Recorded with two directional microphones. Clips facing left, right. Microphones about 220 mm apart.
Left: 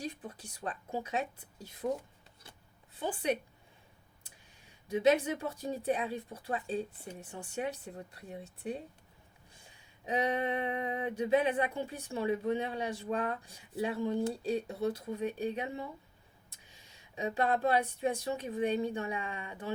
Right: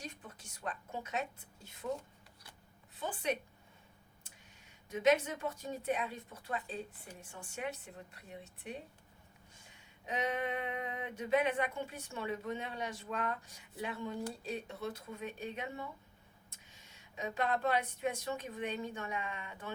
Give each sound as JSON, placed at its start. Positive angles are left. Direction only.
{"t": 0.0, "sound": "a sound", "side_deg": 35}
{"t": 3.0, "sound": "speech", "side_deg": 30}
{"t": 4.9, "sound": "speech", "side_deg": 35}
{"t": 10.1, "sound": "speech", "side_deg": 35}
{"t": 17.2, "sound": "speech", "side_deg": 30}